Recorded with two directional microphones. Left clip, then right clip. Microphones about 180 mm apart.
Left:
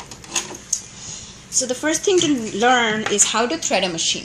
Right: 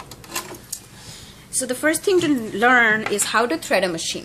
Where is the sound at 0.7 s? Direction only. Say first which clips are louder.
Left 9 dB; 45° right (ahead or behind).